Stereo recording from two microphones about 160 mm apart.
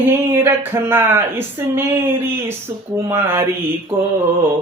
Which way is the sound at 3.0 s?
20° right (ahead or behind).